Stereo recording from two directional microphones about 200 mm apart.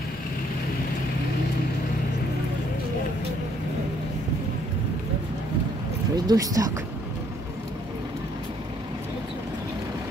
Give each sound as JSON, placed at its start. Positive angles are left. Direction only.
{"t": 6.1, "sound": "speech", "side_deg": -20}